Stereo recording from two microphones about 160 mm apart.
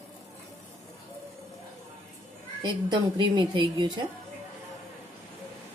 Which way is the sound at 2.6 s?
30° right (ahead or behind).